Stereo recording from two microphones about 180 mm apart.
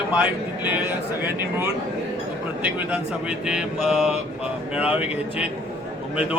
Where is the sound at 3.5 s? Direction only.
Centre (ahead or behind).